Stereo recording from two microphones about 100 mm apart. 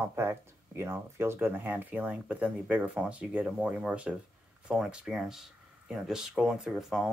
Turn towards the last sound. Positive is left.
turn(degrees=0)  # may be behind; listen again after turning